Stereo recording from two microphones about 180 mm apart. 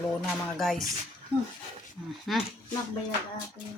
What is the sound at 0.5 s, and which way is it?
Speech, centre (ahead or behind).